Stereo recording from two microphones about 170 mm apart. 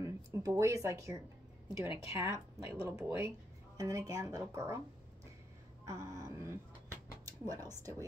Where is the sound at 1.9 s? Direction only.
30° left (ahead or behind).